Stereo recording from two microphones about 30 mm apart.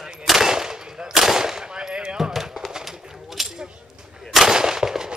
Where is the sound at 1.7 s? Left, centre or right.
Right.